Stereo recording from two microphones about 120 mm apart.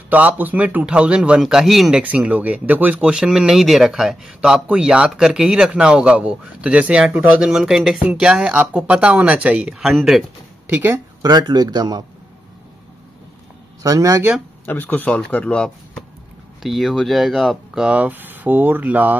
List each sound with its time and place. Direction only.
0.1 s a man's voice: 15° right (ahead or behind)
10.7 s a man's voice: 15° right (ahead or behind)
11.2 s speech: 35° right (ahead or behind)
13.8 s speech: 30° right (ahead or behind)
14.7 s a man's voice: 15° left (ahead or behind); by 19.1 s 15° right (ahead or behind)